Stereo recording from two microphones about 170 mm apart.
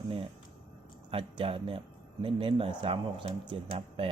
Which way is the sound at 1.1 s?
30° right (ahead or behind).